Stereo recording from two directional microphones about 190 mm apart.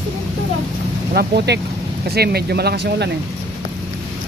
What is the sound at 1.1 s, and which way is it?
Speech, 55° right (ahead or behind).